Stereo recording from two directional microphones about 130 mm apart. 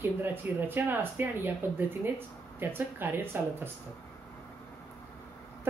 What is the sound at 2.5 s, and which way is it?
Speech, 15° right (ahead or behind).